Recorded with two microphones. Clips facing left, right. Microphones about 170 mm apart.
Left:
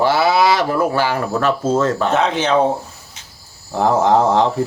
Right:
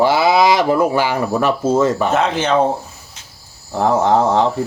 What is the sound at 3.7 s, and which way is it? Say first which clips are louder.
Speech: even; centre (ahead or behind).